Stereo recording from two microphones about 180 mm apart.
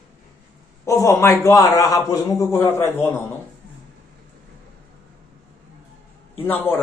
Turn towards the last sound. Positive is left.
turn(degrees=10)  # may be behind; listen again after turning